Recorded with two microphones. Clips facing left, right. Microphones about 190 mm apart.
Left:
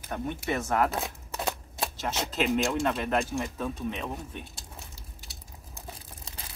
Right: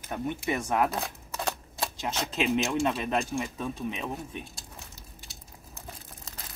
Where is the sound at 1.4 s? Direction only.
5° left (ahead or behind).